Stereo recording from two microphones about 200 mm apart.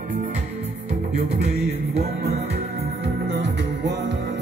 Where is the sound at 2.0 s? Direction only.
55° right (ahead or behind).